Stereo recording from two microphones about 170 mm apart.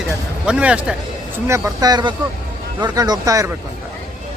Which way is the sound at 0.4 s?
5° right (ahead or behind).